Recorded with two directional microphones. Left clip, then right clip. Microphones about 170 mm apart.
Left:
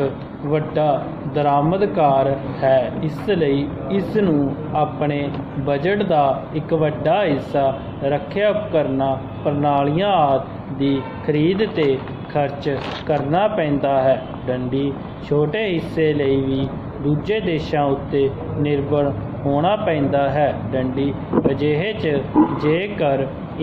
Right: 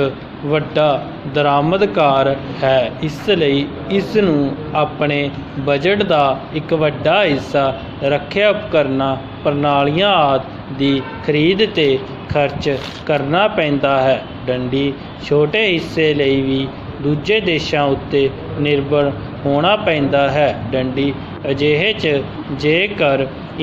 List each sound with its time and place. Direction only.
0.0 s a man's voice: 30° right (ahead or behind)